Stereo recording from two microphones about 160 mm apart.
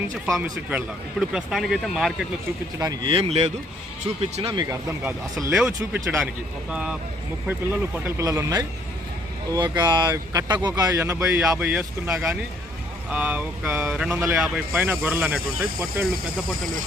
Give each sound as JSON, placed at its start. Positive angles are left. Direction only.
{"t": 0.3, "sound": "a man's voice", "side_deg": -5}
{"t": 3.0, "sound": "speech", "side_deg": -35}
{"t": 4.5, "sound": "speech", "side_deg": -25}
{"t": 5.5, "sound": "a man's voice", "side_deg": -5}